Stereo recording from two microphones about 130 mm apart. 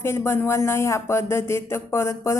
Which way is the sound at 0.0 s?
20° left (ahead or behind).